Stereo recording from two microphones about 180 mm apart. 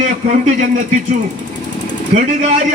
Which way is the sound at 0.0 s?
45° right (ahead or behind).